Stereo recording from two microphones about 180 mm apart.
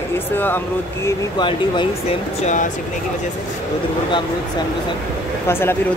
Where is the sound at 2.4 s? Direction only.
45° left (ahead or behind).